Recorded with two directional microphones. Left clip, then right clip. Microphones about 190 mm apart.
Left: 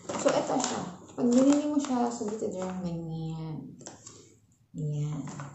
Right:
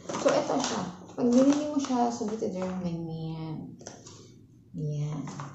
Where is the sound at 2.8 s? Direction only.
Centre (ahead or behind).